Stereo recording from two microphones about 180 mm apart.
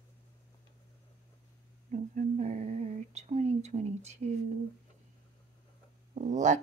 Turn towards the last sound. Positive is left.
turn(degrees=-45)  # may be behind; listen again after turning